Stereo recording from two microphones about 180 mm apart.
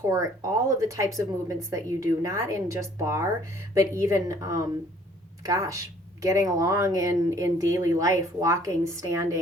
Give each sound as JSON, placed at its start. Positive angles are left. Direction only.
{"t": 0.0, "sound": "speech", "side_deg": -20}